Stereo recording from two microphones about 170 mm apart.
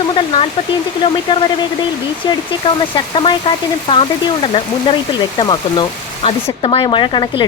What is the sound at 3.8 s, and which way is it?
Speech, 30° left (ahead or behind).